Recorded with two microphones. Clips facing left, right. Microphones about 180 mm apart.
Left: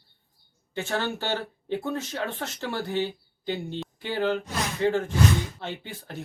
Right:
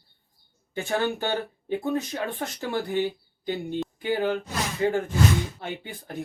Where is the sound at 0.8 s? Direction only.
15° right (ahead or behind).